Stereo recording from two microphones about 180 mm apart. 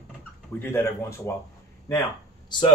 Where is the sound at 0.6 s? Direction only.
15° left (ahead or behind).